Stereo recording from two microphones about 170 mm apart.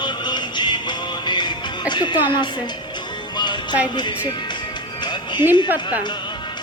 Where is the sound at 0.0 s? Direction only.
25° left (ahead or behind).